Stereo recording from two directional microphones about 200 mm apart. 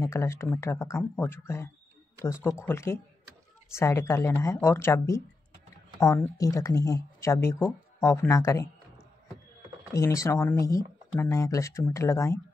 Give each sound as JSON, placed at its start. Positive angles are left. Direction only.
{"t": 0.0, "sound": "speech", "side_deg": 15}
{"t": 9.9, "sound": "speech", "side_deg": 15}